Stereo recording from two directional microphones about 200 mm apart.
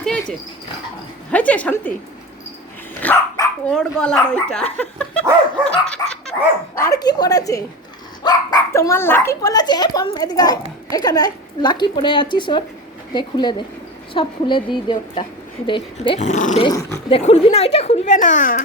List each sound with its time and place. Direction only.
0.0 s dog: 5° left (ahead or behind)
1.3 s a woman's voice: 5° left (ahead or behind)
3.0 s dog: 15° left (ahead or behind)
3.7 s speech: 5° left (ahead or behind)
5.8 s dog: 5° left (ahead or behind)
6.7 s a woman's voice: 15° left (ahead or behind); by 16.6 s 35° left (ahead or behind)
16.6 s a woman's voice: 20° left (ahead or behind)
17.2 s speech: 30° left (ahead or behind)